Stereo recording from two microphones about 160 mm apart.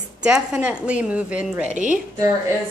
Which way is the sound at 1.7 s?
50° right (ahead or behind).